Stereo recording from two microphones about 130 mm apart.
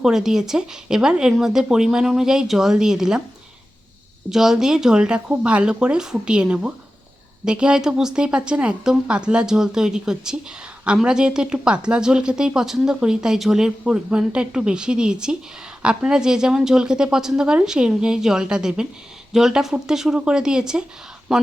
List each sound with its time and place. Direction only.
0.0 s speech: 5° right (ahead or behind)
4.3 s speech: 5° right (ahead or behind)